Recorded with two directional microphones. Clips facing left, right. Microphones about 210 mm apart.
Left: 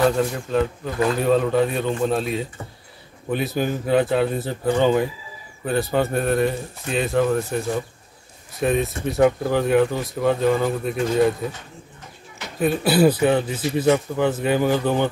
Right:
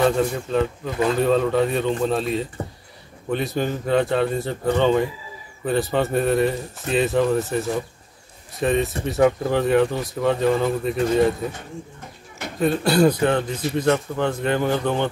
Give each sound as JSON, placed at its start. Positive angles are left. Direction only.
{"t": 0.0, "sound": "speech", "side_deg": 0}
{"t": 12.5, "sound": "a man's voice", "side_deg": 5}